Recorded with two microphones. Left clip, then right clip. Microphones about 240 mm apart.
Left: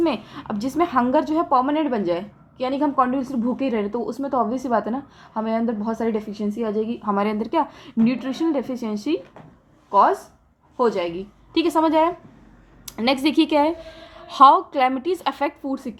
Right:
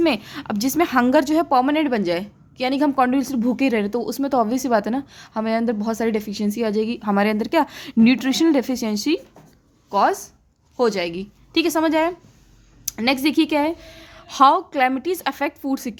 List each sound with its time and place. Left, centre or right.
0.0 s a woman's voice: right
12.8 s a sound: right
13.2 s a woman's voice: right